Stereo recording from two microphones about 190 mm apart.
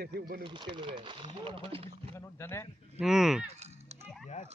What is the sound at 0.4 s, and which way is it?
Speech, 25° right (ahead or behind).